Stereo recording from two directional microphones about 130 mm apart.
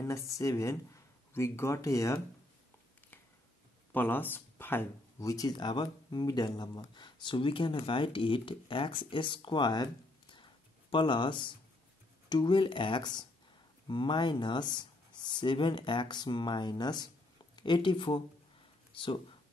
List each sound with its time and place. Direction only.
0.0 s speech: 25° left (ahead or behind)
3.9 s speech: 15° left (ahead or behind)
5.3 s speech: 30° left (ahead or behind)
10.3 s a sound: 40° left (ahead or behind)
12.3 s speech: 35° left (ahead or behind)